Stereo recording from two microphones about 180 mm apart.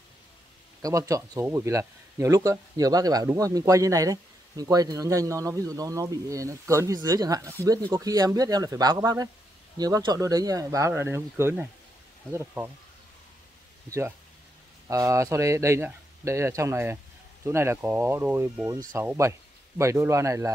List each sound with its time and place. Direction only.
0.8 s speech: 20° right (ahead or behind)
13.8 s speech: 15° right (ahead or behind)